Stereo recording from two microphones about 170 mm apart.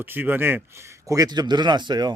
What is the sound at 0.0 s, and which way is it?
A man's voice, 10° right (ahead or behind).